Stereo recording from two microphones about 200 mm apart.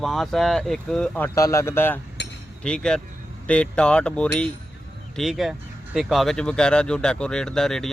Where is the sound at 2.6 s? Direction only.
5° left (ahead or behind).